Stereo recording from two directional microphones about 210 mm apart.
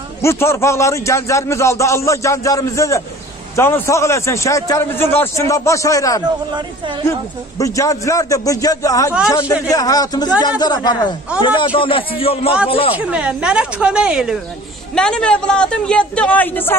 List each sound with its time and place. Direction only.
0.2 s a man's voice: 15° left (ahead or behind)
12.9 s a man's voice: 5° right (ahead or behind)